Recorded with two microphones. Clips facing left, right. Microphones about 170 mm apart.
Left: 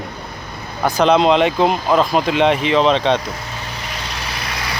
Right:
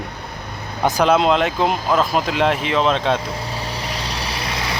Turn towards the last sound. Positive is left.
turn(degrees=-30)  # may be behind; listen again after turning